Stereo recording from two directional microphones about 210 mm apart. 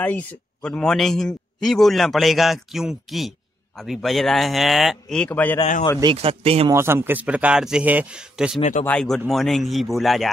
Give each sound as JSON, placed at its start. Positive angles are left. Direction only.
{"t": 0.0, "sound": "a man's voice", "side_deg": 5}
{"t": 5.6, "sound": "speech", "side_deg": 35}
{"t": 6.1, "sound": "speech", "side_deg": -30}
{"t": 6.7, "sound": "a man's voice", "side_deg": -10}
{"t": 8.5, "sound": "speech", "side_deg": 35}
{"t": 8.8, "sound": "a man's voice", "side_deg": 5}